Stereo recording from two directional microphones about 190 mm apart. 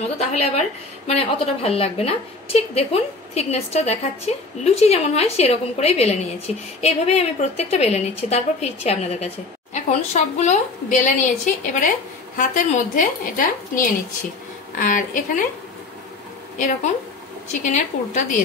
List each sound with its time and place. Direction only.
0.2 s a woman's voice: 35° left (ahead or behind)
16.5 s a woman's voice: 40° left (ahead or behind)